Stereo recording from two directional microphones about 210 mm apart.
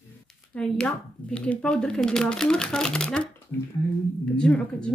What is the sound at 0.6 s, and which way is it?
Speech, 5° left (ahead or behind).